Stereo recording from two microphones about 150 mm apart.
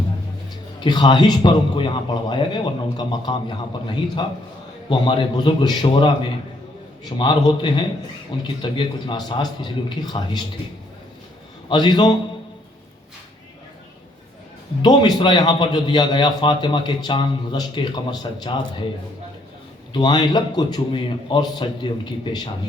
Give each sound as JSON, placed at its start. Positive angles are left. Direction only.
{"t": 0.8, "sound": "a man's voice", "side_deg": 30}
{"t": 7.2, "sound": "a man's voice", "side_deg": 30}
{"t": 11.7, "sound": "a man's voice", "side_deg": 30}
{"t": 14.8, "sound": "a man's voice", "side_deg": 30}
{"t": 19.9, "sound": "a man's voice", "side_deg": 30}